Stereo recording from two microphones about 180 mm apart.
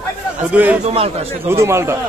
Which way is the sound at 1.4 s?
15° right (ahead or behind).